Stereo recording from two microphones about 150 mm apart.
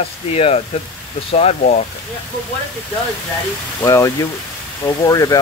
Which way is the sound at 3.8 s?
20° left (ahead or behind).